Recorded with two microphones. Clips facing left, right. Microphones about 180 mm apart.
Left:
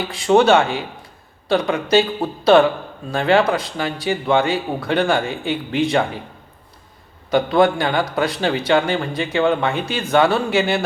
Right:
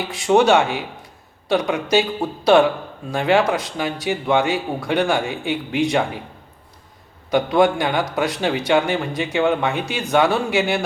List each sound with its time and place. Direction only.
0.1 s a man's voice: 15° right (ahead or behind)
7.3 s a man's voice: 15° right (ahead or behind)
9.4 s speech: 5° right (ahead or behind)
9.6 s a man's voice: 15° right (ahead or behind)